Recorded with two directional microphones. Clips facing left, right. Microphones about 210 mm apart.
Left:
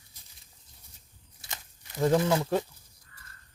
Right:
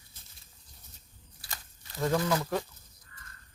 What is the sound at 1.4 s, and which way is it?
Crumpling, 20° left (ahead or behind).